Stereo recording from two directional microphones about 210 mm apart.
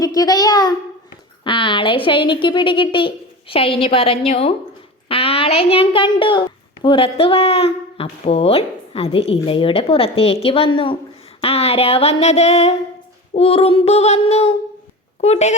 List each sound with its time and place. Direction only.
0.0 s a child's voice: 15° left (ahead or behind)